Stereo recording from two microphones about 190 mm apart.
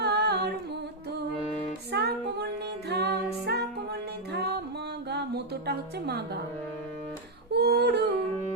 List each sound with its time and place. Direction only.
0.0 s humming: 60° right (ahead or behind)
1.9 s music: 60° right (ahead or behind)
7.5 s yodeling: 60° right (ahead or behind)